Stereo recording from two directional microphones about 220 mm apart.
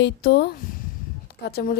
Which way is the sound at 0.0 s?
45° left (ahead or behind).